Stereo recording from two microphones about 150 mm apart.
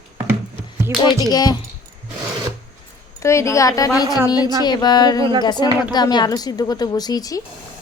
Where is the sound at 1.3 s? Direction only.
25° left (ahead or behind).